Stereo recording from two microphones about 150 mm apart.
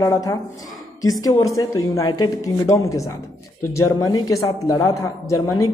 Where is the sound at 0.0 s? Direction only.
25° left (ahead or behind).